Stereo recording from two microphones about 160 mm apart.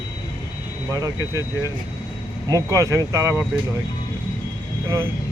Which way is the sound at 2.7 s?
20° right (ahead or behind).